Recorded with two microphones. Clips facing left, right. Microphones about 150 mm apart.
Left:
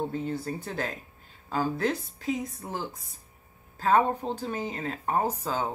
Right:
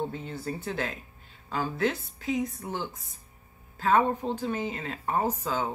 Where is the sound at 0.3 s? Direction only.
40° left (ahead or behind).